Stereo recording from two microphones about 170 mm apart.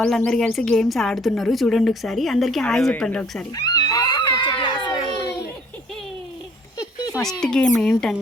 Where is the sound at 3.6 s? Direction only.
20° left (ahead or behind).